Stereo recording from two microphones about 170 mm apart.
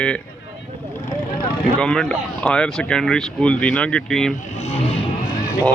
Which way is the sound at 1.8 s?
5° left (ahead or behind).